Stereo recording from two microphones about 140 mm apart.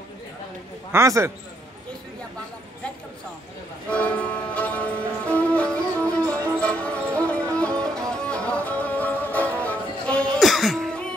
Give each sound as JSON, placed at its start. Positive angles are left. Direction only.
{"t": 0.9, "sound": "a man's voice", "side_deg": -20}
{"t": 3.9, "sound": "music", "side_deg": 10}